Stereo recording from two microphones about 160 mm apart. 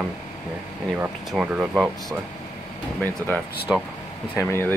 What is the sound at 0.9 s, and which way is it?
Speech, 10° right (ahead or behind).